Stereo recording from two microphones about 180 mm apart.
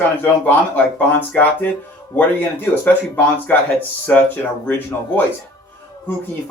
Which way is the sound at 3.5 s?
10° left (ahead or behind).